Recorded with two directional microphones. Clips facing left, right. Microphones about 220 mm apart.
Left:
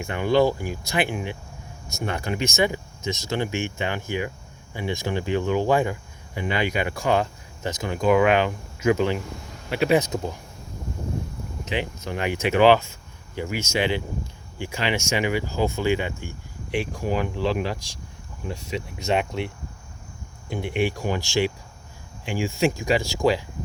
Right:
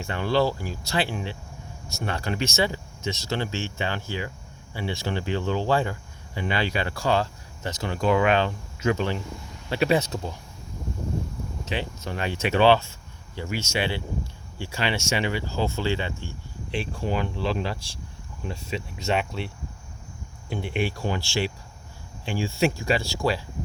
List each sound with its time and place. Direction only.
0.0 s speech: 15° left (ahead or behind)
10.1 s speech: 10° left (ahead or behind)
11.6 s speech: 15° left (ahead or behind)
20.6 s speech: 15° left (ahead or behind)